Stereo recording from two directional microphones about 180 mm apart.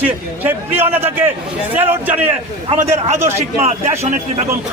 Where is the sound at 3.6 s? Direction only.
35° right (ahead or behind).